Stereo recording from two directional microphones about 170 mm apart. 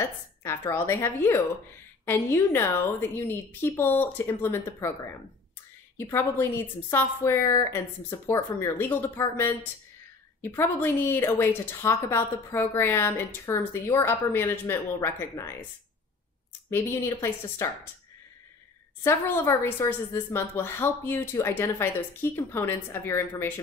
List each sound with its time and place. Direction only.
0.4 s a woman's voice: 15° left (ahead or behind)
16.7 s a woman's voice: 15° left (ahead or behind)
19.0 s a woman's voice: 15° left (ahead or behind)